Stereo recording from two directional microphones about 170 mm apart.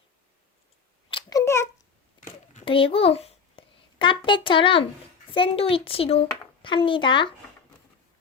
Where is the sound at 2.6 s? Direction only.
30° left (ahead or behind).